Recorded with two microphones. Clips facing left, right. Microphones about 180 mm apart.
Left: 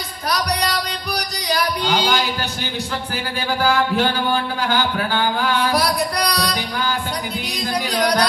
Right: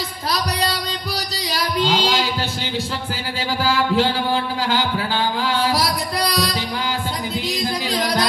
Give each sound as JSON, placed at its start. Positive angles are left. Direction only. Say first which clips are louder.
{"t": 1.6, "sound": "a sound", "louder": "right 2 dB", "side_deg": -25}
{"t": 3.6, "sound": "mantra", "louder": "even", "side_deg": -25}
{"t": 6.1, "sound": "music", "louder": "even", "side_deg": -25}
{"t": 7.9, "sound": "music", "louder": "left 3 dB", "side_deg": -25}